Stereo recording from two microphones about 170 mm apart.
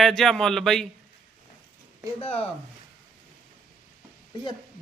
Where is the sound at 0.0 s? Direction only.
Centre (ahead or behind).